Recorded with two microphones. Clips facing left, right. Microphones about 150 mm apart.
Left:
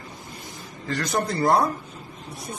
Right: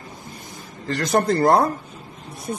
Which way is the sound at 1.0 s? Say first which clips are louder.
Right 6 dB; 65° right (ahead or behind).